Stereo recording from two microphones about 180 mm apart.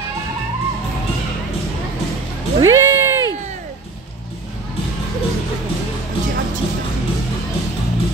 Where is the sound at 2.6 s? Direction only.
15° right (ahead or behind).